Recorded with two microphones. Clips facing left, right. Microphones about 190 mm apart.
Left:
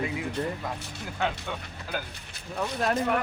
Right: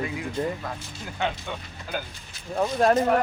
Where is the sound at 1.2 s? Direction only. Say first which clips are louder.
Right 1 dB; centre (ahead or behind).